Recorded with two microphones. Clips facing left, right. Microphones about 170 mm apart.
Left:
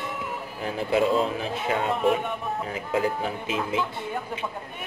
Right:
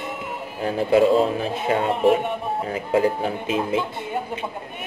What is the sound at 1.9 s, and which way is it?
A man's voice, 25° right (ahead or behind).